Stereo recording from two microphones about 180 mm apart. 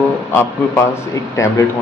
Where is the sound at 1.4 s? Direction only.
15° left (ahead or behind).